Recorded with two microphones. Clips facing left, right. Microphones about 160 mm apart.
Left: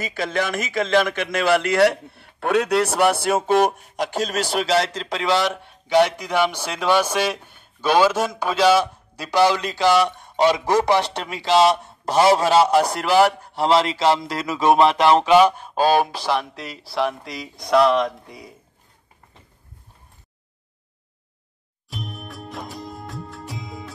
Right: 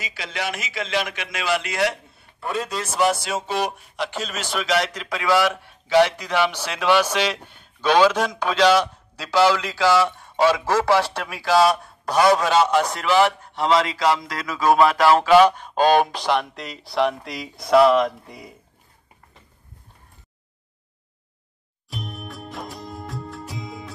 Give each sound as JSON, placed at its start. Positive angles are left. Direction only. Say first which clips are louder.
{"t": 0.0, "sound": "a man's voice", "louder": "left 6 dB", "side_deg": 50}
{"t": 21.8, "sound": "music", "louder": "even", "side_deg": 0}